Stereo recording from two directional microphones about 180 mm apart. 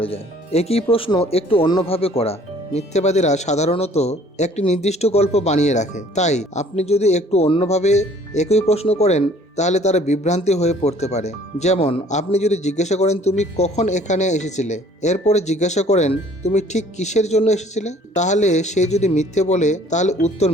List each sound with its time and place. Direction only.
0.0 s speech: 35° left (ahead or behind)